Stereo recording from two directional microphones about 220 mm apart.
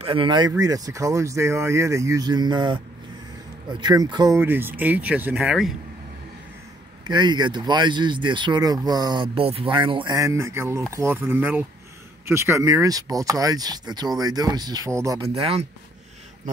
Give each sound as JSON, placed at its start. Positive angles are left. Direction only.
{"t": 0.0, "sound": "speech", "side_deg": -25}
{"t": 3.8, "sound": "speech", "side_deg": -20}
{"t": 7.1, "sound": "speech", "side_deg": -20}
{"t": 15.2, "sound": "speech", "side_deg": -25}